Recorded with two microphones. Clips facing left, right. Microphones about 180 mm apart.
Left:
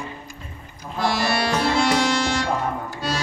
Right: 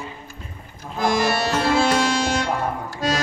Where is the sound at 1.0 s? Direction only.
45° right (ahead or behind).